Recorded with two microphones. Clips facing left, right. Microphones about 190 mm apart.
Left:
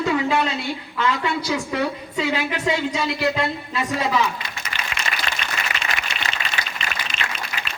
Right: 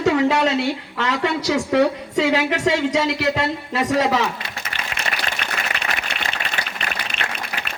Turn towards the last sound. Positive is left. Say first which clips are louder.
# right 1 dB
turn(degrees=-60)  # may be behind; listen again after turning